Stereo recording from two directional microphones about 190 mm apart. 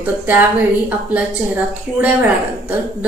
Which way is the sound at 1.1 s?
10° right (ahead or behind).